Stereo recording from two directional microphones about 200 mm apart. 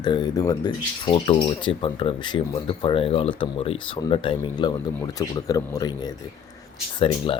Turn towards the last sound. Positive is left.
turn(degrees=25)  # may be behind; listen again after turning